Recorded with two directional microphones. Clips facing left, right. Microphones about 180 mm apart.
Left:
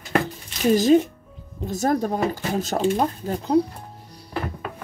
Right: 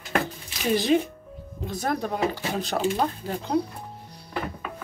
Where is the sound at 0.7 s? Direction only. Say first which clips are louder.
Left 5 dB; 45° left (ahead or behind).